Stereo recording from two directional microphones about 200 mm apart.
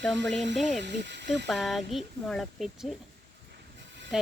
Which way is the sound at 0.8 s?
60° right (ahead or behind).